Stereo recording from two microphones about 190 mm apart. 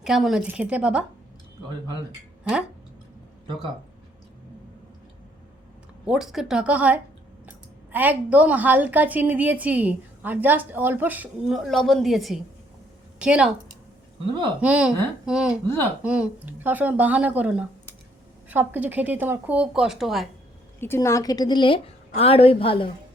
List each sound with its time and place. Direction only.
0.0 s a woman's voice: centre (ahead or behind)
2.4 s speech: 5° right (ahead or behind)
6.1 s a woman's voice: centre (ahead or behind)
14.6 s a woman's voice: 5° right (ahead or behind)
20.8 s a woman's voice: 15° left (ahead or behind); by 22.9 s 30° left (ahead or behind)